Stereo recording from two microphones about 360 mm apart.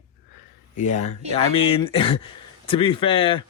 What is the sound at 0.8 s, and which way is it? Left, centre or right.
Speech, centre.